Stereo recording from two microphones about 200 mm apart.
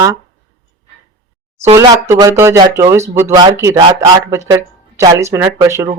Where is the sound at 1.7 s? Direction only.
15° right (ahead or behind).